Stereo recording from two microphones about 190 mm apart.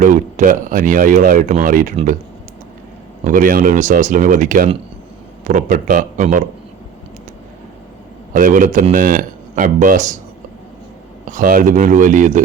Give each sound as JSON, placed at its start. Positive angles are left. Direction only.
{"t": 0.0, "sound": "speech", "side_deg": -45}
{"t": 3.2, "sound": "speech", "side_deg": -45}
{"t": 8.3, "sound": "speech", "side_deg": -45}
{"t": 11.3, "sound": "speech", "side_deg": -45}